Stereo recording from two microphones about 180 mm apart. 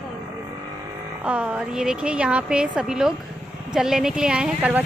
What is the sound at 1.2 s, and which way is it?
A woman's voice, 5° right (ahead or behind).